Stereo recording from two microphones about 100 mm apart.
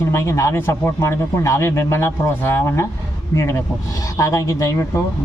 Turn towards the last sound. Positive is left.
turn(degrees=30)  # may be behind; listen again after turning